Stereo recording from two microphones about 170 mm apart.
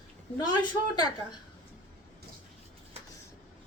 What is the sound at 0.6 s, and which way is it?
Speech, 25° left (ahead or behind).